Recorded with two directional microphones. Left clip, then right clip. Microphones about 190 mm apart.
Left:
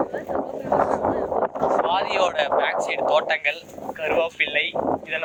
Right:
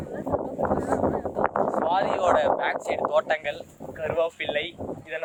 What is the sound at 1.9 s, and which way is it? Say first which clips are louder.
Speech: even; centre (ahead or behind).